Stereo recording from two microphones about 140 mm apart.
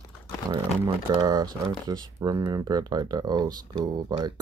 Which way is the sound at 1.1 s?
30° right (ahead or behind).